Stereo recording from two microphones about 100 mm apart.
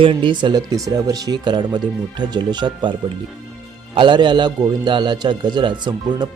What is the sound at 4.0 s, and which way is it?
Speech, 50° right (ahead or behind).